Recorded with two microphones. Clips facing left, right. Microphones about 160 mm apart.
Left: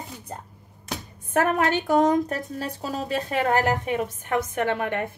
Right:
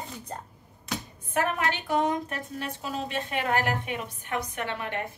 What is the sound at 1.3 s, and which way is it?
A woman's voice, 45° left (ahead or behind).